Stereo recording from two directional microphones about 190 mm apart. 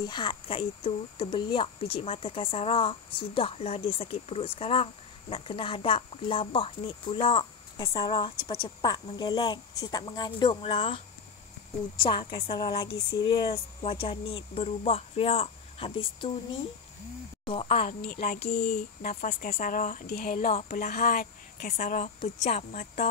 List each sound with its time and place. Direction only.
0.0 s speech: 20° left (ahead or behind)
12.0 s speech: 25° left (ahead or behind)
17.5 s speech: 30° left (ahead or behind)
17.8 s speech: 50° left (ahead or behind)
20.4 s a woman's voice: 35° left (ahead or behind)
20.7 s a woman's voice: 50° left (ahead or behind)